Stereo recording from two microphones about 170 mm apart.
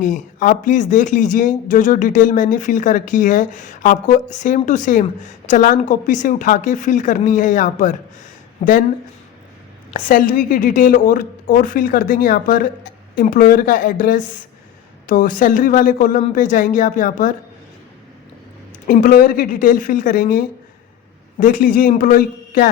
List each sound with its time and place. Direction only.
0.0 s speech: 50° left (ahead or behind)
9.9 s speech: 50° left (ahead or behind)
18.9 s speech: 55° left (ahead or behind)